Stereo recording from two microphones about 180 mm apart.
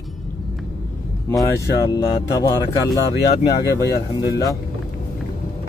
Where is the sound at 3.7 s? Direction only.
20° right (ahead or behind).